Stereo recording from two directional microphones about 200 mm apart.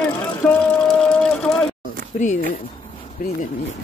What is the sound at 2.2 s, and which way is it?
Speech, 40° left (ahead or behind).